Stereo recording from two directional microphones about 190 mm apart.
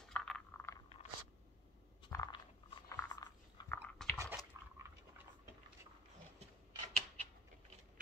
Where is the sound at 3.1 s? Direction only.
20° left (ahead or behind).